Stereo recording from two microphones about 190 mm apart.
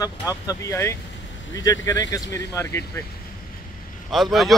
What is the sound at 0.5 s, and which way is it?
Speech, 15° left (ahead or behind).